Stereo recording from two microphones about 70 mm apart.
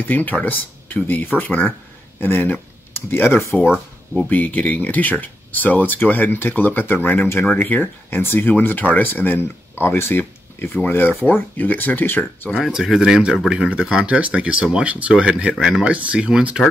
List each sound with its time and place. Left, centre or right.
0.0 s speech: left
12.6 s speech: centre